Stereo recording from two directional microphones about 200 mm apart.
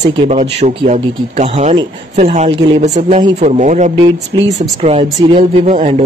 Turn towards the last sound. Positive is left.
turn(degrees=-35)  # may be behind; listen again after turning